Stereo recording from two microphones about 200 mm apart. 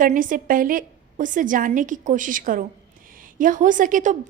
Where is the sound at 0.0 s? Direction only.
40° right (ahead or behind).